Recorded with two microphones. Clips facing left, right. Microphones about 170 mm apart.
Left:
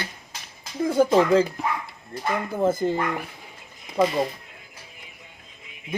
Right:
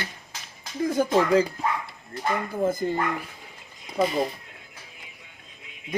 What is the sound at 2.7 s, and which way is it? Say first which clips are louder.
Speech: left 3 dB; 25° left (ahead or behind).